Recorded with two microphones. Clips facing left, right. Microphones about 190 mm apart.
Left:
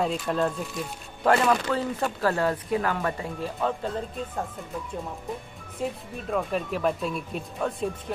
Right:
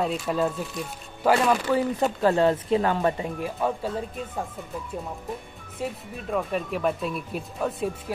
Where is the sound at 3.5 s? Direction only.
5° right (ahead or behind).